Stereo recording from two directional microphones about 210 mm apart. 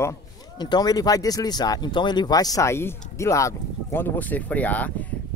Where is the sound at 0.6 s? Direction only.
20° left (ahead or behind).